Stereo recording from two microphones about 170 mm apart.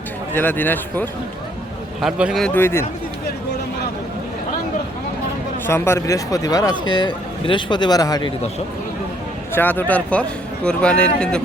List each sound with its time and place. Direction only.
0.3 s speech: 10° left (ahead or behind)
2.0 s speech: 5° right (ahead or behind)
2.6 s speech: 15° left (ahead or behind)
5.6 s speech: 15° left (ahead or behind)
9.5 s speech: 10° left (ahead or behind)